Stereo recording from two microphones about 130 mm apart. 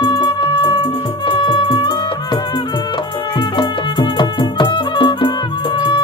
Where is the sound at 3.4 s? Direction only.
35° left (ahead or behind).